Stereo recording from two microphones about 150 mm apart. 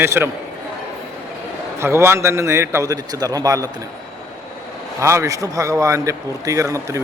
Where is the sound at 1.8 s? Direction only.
15° right (ahead or behind).